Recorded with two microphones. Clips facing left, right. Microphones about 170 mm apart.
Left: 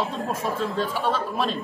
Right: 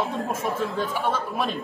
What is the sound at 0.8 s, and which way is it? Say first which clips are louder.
Speech: left 1 dB; 15° right (ahead or behind).